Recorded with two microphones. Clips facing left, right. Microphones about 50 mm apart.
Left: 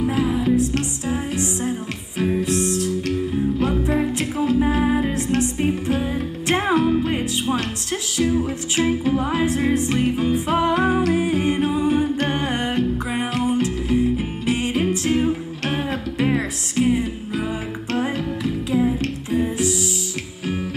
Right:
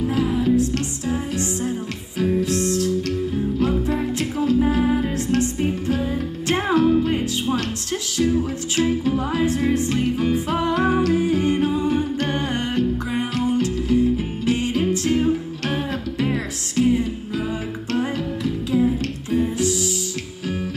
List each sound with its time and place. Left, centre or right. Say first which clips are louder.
0.0 s music: even; centre